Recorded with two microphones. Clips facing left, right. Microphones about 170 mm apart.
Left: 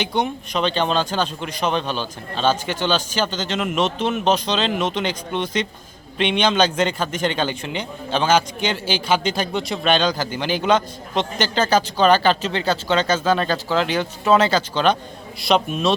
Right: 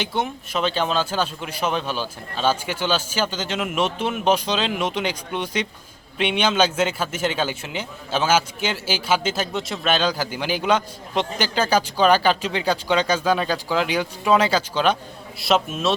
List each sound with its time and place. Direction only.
0.0 s a man's voice: centre (ahead or behind)